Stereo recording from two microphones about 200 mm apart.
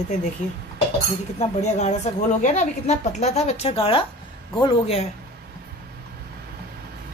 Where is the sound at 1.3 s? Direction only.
35° left (ahead or behind).